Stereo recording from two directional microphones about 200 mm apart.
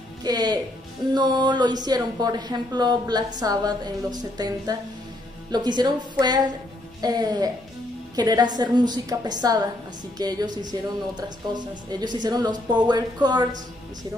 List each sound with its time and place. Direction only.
0.2 s speech: 20° right (ahead or behind)